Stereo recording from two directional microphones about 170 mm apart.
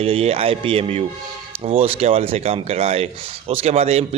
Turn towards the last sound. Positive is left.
turn(degrees=-35)  # may be behind; listen again after turning